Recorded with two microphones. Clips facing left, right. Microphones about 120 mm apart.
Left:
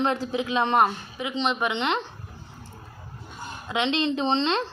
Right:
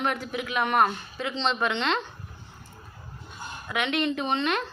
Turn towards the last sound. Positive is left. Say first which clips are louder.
# left 3 dB
turn(degrees=25)  # may be behind; listen again after turning